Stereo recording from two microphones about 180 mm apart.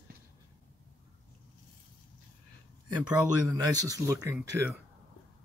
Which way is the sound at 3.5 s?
20° right (ahead or behind).